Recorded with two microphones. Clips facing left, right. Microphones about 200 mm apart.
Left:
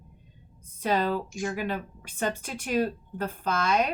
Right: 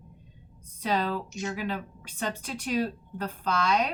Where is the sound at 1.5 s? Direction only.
50° left (ahead or behind).